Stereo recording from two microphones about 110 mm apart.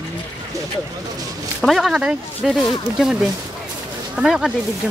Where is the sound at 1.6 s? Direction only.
Centre (ahead or behind).